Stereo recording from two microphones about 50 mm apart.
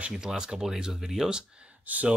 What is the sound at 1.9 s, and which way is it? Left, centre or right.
Speech, right.